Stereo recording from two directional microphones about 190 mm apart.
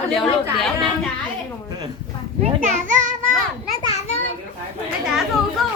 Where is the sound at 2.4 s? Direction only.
40° right (ahead or behind).